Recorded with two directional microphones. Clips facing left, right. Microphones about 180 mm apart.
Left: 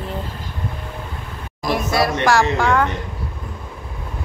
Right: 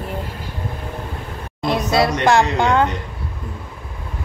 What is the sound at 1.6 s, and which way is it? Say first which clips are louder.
A woman's voice: right 2 dB; 25° right (ahead or behind).